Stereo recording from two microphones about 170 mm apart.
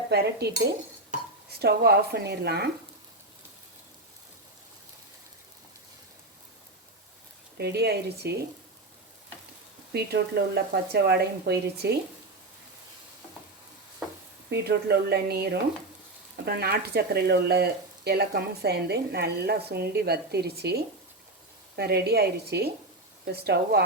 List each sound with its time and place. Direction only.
0.1 s speech: 70° right (ahead or behind)
1.5 s speech: 70° right (ahead or behind)
7.6 s speech: 70° right (ahead or behind)
9.9 s speech: 70° right (ahead or behind)
14.5 s speech: 75° right (ahead or behind)